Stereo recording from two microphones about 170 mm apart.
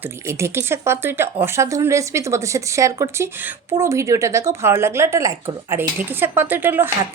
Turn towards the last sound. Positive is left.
turn(degrees=-15)  # may be behind; listen again after turning